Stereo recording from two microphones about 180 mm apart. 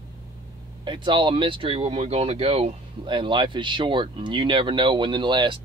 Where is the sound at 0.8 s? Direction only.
25° right (ahead or behind).